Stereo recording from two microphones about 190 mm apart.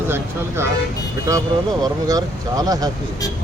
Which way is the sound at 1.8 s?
20° right (ahead or behind).